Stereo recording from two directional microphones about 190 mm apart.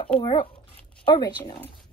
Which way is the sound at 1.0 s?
20° left (ahead or behind).